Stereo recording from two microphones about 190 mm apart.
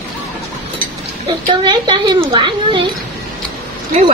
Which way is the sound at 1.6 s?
25° right (ahead or behind).